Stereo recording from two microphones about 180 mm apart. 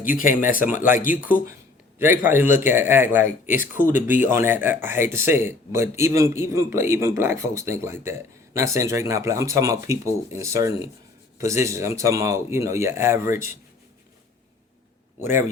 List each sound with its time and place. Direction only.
0.0 s speech: 50° left (ahead or behind)
2.0 s speech: 10° right (ahead or behind)
15.2 s speech: 15° right (ahead or behind)